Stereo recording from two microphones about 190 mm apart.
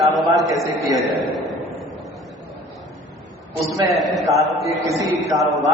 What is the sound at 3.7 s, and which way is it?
A man's voice, centre (ahead or behind).